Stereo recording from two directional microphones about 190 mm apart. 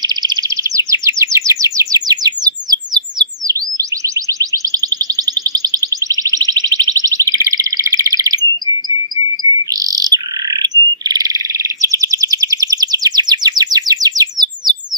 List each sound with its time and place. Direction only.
0.0 s chirp: 20° right (ahead or behind)
7.5 s alarm: 20° right (ahead or behind)
9.4 s cricket: 20° right (ahead or behind)
11.0 s frog: 20° right (ahead or behind)